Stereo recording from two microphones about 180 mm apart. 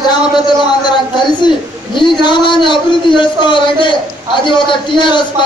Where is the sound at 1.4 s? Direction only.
25° left (ahead or behind).